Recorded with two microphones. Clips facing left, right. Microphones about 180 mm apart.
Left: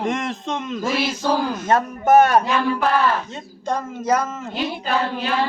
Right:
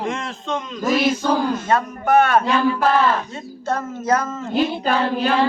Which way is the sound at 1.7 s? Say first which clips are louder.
Left 5 dB; 45° left (ahead or behind).